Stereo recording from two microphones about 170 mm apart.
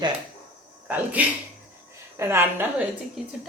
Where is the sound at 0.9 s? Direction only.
10° right (ahead or behind).